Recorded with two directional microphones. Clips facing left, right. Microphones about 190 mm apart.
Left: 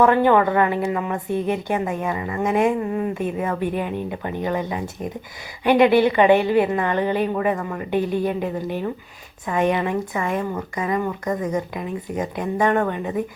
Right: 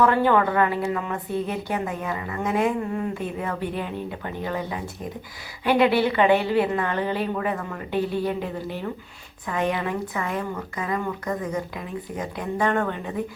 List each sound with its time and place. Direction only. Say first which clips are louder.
0.0 s a woman's voice: left 4 dB; 20° left (ahead or behind)